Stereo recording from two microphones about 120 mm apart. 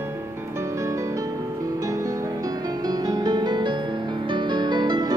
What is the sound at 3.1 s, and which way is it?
Music, 35° right (ahead or behind).